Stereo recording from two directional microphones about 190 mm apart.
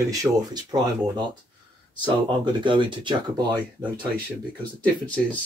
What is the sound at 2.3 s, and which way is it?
Speech, 25° right (ahead or behind).